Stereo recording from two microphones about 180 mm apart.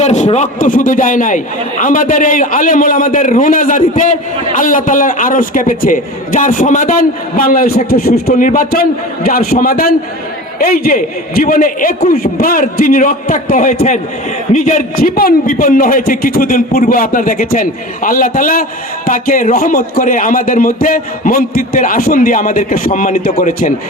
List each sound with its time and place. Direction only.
0.0 s a man's voice: 40° left (ahead or behind)